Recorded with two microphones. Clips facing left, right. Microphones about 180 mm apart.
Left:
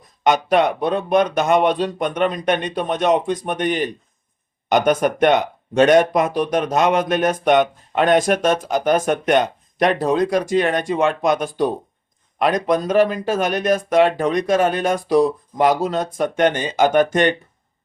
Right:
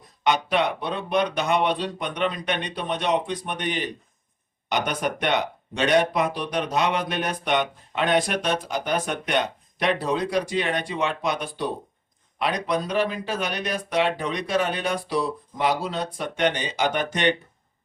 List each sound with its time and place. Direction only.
0.3 s speech: 45° left (ahead or behind)